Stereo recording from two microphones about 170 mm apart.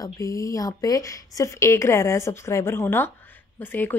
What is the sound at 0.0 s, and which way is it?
Speech, 20° left (ahead or behind).